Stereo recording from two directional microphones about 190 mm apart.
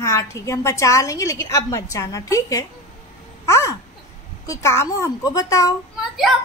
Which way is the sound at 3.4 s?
15° left (ahead or behind).